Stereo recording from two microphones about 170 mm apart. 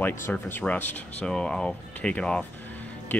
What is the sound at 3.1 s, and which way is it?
Music, 10° left (ahead or behind).